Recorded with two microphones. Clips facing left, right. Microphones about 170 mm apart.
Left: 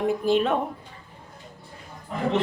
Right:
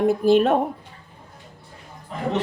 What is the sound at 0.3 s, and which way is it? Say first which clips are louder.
Speech: right 5 dB; 45° right (ahead or behind).